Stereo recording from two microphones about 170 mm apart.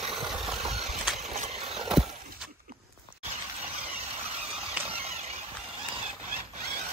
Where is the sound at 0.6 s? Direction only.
40° right (ahead or behind).